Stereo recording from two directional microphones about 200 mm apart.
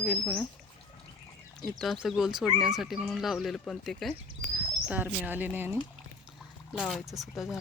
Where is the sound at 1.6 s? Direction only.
Centre (ahead or behind).